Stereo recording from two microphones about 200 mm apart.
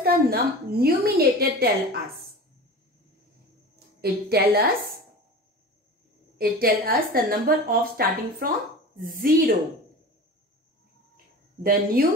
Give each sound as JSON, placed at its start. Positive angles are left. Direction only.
{"t": 0.0, "sound": "a woman's voice", "side_deg": -50}
{"t": 4.0, "sound": "a woman's voice", "side_deg": -50}
{"t": 6.3, "sound": "a woman's voice", "side_deg": -50}
{"t": 11.6, "sound": "a woman's voice", "side_deg": -45}